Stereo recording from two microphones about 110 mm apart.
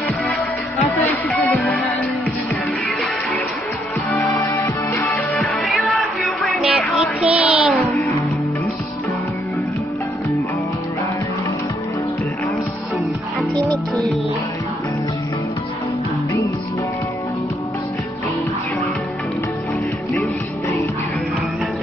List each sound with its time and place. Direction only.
1.0 s music: 15° left (ahead or behind)
4.4 s music: 35° left (ahead or behind)
4.9 s music: 15° left (ahead or behind)
5.6 s music: centre (ahead or behind)
20.2 s music: 25° left (ahead or behind)